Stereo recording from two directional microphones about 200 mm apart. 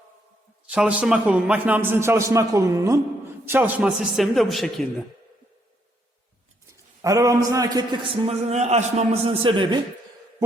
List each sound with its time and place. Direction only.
0.7 s a man's voice: 5° right (ahead or behind)
7.0 s a man's voice: 15° right (ahead or behind)